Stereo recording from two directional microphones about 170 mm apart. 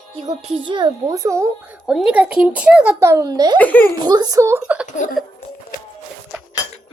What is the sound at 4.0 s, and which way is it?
Speech, 25° right (ahead or behind).